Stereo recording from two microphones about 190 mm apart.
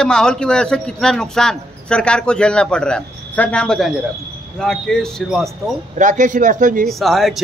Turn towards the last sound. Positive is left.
turn(degrees=0)  # may be behind; listen again after turning